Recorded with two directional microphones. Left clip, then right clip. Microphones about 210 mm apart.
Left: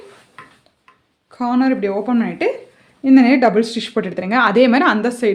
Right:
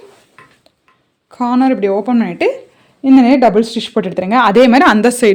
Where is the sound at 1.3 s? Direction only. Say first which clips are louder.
Right 4 dB; 40° right (ahead or behind).